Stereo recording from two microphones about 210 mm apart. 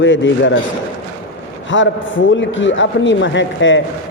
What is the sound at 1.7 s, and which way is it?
A man's voice, 65° left (ahead or behind).